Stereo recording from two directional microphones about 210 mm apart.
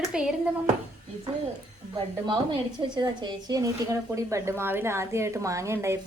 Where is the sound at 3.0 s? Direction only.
20° right (ahead or behind).